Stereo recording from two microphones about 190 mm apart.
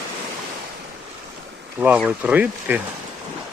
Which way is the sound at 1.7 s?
5° right (ahead or behind).